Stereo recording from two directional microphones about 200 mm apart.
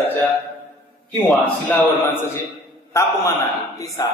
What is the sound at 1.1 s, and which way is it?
A man's voice, 5° left (ahead or behind).